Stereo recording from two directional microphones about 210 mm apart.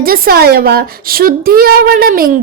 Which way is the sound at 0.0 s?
45° right (ahead or behind).